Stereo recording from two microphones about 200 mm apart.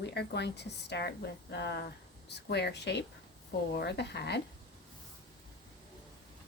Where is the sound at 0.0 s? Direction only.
55° left (ahead or behind).